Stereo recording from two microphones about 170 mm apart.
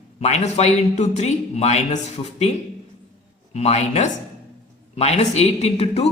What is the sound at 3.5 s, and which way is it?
Speech, 40° left (ahead or behind).